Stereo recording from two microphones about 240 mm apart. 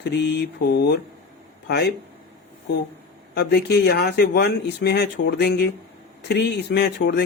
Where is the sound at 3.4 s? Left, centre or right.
Left.